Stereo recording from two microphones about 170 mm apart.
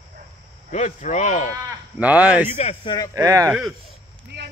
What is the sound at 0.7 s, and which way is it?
Speech, 45° left (ahead or behind).